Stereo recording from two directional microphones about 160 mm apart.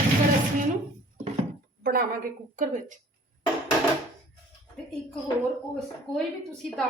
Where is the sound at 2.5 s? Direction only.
50° right (ahead or behind).